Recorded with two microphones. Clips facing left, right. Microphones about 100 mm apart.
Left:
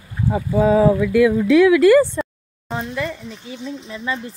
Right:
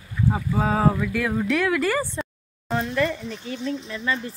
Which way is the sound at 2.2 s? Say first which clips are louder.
Left 6 dB; 60° left (ahead or behind).